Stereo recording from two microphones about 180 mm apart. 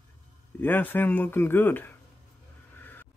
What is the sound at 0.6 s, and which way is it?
Speech, 10° left (ahead or behind).